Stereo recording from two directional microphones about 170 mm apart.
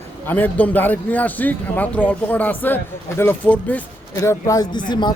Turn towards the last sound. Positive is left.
turn(degrees=25)  # may be behind; listen again after turning